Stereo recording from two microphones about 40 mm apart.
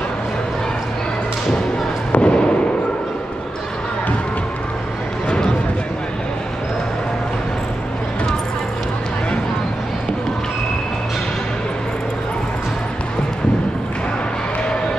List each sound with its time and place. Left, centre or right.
2.1 s fireworks: left